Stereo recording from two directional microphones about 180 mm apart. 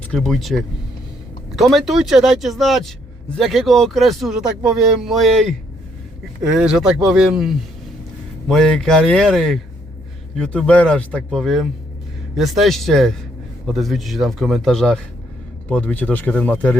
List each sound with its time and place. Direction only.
0.1 s a man's voice: centre (ahead or behind)